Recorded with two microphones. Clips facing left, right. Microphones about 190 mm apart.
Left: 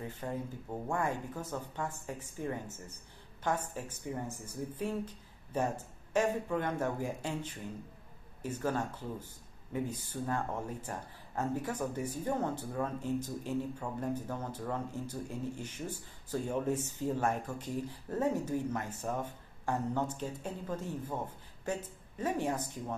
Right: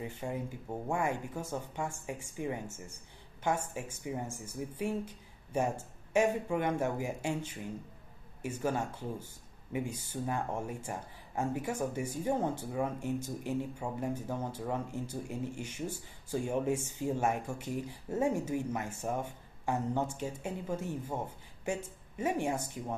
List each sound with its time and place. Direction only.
0.0 s speech: 10° right (ahead or behind)
10.1 s speech: 20° right (ahead or behind)
10.9 s speech: 10° right (ahead or behind)
12.1 s speech: 25° right (ahead or behind)
12.7 s speech: 10° right (ahead or behind)